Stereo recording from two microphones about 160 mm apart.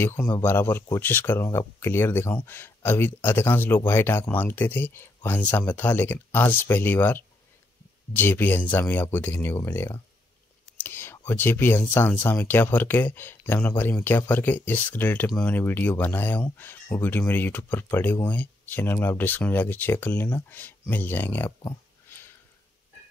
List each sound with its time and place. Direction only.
0.3 s speech: 15° left (ahead or behind)